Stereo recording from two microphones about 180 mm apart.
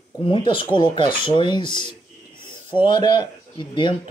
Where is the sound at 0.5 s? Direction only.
30° left (ahead or behind).